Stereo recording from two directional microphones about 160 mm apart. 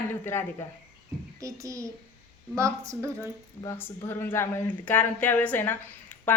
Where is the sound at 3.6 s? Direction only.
15° left (ahead or behind).